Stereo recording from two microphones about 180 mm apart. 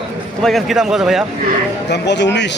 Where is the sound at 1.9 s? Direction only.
75° left (ahead or behind).